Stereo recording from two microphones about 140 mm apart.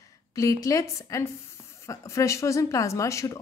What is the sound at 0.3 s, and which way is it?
Speech, 25° left (ahead or behind).